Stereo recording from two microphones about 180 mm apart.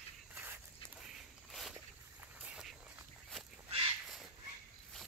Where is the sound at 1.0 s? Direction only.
Centre (ahead or behind).